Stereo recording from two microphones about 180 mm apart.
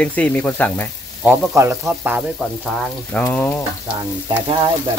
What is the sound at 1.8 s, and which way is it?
Speech, 10° right (ahead or behind).